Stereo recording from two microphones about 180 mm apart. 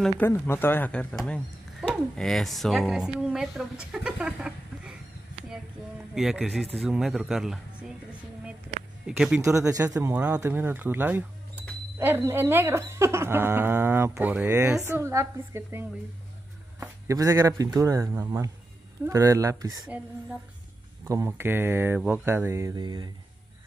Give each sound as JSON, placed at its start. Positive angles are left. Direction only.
{"t": 0.2, "sound": "speech", "side_deg": 10}
{"t": 3.9, "sound": "a sound", "side_deg": -5}
{"t": 6.1, "sound": "speech", "side_deg": 0}
{"t": 9.0, "sound": "speech", "side_deg": -5}
{"t": 9.4, "sound": "speech", "side_deg": -15}
{"t": 17.1, "sound": "speech", "side_deg": -15}
{"t": 21.0, "sound": "speech", "side_deg": -15}